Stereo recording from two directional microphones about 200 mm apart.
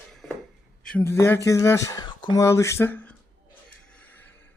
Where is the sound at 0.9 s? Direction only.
15° left (ahead or behind).